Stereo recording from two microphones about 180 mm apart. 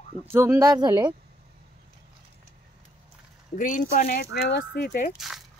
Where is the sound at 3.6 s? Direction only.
45° left (ahead or behind).